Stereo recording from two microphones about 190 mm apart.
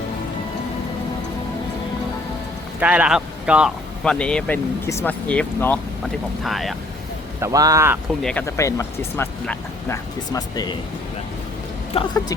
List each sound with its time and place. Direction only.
2.8 s speech: 5° right (ahead or behind)
7.4 s speech: 20° right (ahead or behind)
8.2 s speech: 5° left (ahead or behind)
8.4 s speech: 15° left (ahead or behind)
11.9 s speech: 20° left (ahead or behind)